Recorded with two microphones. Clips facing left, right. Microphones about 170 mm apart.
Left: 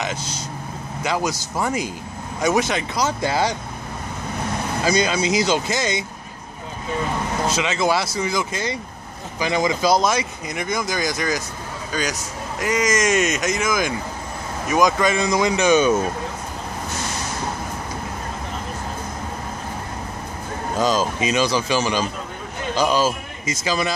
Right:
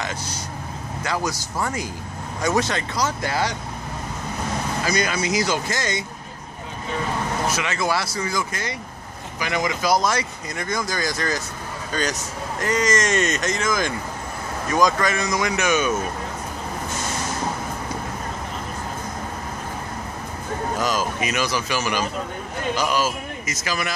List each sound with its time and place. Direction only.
0.0 s speech: 20° left (ahead or behind)
4.8 s speech: 25° left (ahead or behind)
7.4 s a man's voice: 25° left (ahead or behind)
20.8 s speech: 25° left (ahead or behind)